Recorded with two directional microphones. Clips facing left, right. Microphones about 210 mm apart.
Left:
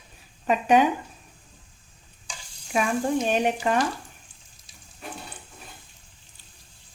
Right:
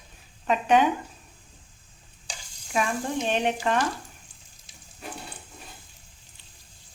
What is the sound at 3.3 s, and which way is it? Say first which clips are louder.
Speech: left 2 dB; 10° left (ahead or behind).